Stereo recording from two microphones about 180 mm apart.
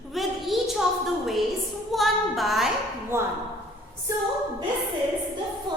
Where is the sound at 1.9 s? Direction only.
Centre (ahead or behind).